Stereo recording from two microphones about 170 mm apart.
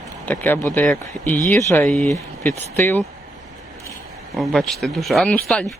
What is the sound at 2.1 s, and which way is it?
Speech, 15° left (ahead or behind).